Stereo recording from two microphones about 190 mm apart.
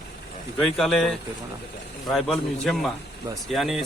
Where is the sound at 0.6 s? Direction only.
Centre (ahead or behind).